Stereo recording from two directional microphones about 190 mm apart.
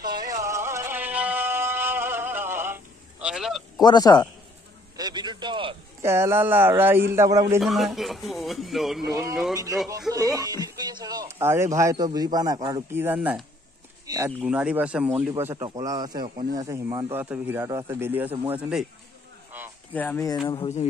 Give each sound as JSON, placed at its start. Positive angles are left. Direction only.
{"t": 0.0, "sound": "music", "side_deg": -20}
{"t": 3.8, "sound": "speech", "side_deg": 20}
{"t": 4.9, "sound": "a sound", "side_deg": -20}
{"t": 6.0, "sound": "speech", "side_deg": -15}
{"t": 7.6, "sound": "speech", "side_deg": 0}
{"t": 9.0, "sound": "speech", "side_deg": -15}
{"t": 12.9, "sound": "speech", "side_deg": -10}
{"t": 14.4, "sound": "speech", "side_deg": -5}
{"t": 19.9, "sound": "speech", "side_deg": 10}
{"t": 20.4, "sound": "speech", "side_deg": 25}